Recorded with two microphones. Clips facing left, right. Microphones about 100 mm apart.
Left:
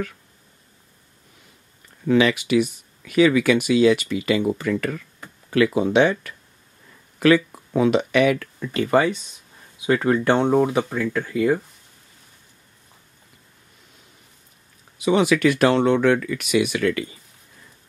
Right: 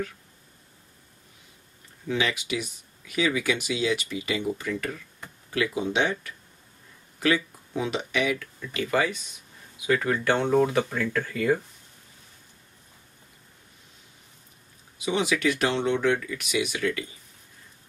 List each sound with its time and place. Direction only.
2.0 s speech: 65° left (ahead or behind)
8.7 s speech: 35° left (ahead or behind); by 11.6 s 15° left (ahead or behind)
15.0 s speech: 60° left (ahead or behind)